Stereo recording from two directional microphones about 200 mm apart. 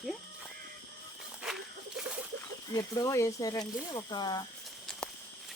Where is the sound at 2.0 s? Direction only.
5° right (ahead or behind).